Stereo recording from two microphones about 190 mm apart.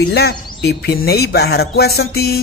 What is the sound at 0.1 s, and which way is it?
Speech, 60° left (ahead or behind).